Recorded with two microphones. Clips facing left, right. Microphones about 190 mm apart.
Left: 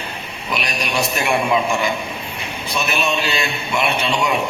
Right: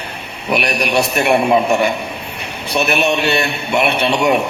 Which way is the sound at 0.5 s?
65° right (ahead or behind).